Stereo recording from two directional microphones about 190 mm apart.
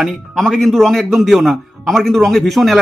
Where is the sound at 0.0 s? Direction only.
Centre (ahead or behind).